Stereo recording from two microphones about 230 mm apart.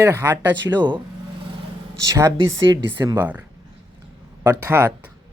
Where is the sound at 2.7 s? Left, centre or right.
Centre.